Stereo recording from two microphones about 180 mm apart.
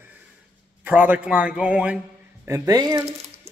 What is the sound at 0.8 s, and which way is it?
A man's voice, 10° right (ahead or behind).